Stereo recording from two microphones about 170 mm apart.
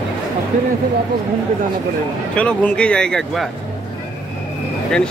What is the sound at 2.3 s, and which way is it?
Speech, 5° left (ahead or behind).